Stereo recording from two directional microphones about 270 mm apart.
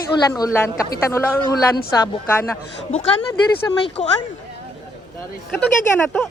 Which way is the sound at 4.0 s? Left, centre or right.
Centre.